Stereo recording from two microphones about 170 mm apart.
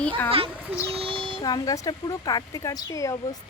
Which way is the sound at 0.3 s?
30° right (ahead or behind).